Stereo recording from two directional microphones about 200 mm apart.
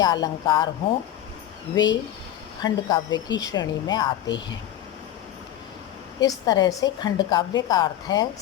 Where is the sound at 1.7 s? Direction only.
20° left (ahead or behind).